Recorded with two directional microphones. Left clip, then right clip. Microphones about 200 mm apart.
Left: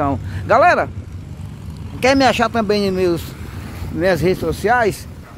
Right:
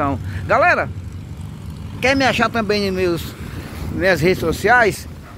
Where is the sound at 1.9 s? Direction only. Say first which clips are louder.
Left 2 dB; 35° left (ahead or behind); by 5.0 s 15° left (ahead or behind).